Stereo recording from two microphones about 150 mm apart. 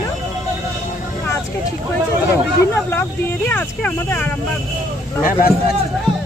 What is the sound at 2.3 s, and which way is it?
Speech, 15° left (ahead or behind).